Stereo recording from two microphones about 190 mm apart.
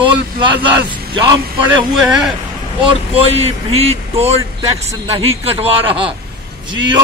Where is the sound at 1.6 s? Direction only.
Centre (ahead or behind).